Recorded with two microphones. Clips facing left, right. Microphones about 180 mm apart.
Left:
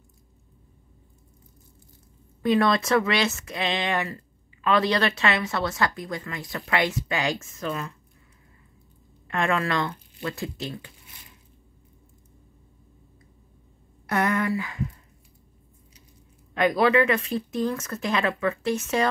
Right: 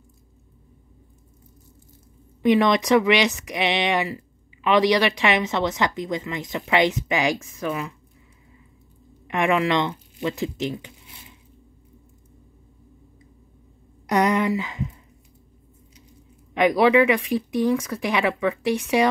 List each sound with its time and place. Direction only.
2.4 s a woman's voice: 15° right (ahead or behind)
9.3 s speech: 15° right (ahead or behind)
14.0 s speech: 15° right (ahead or behind)
16.5 s speech: 15° right (ahead or behind)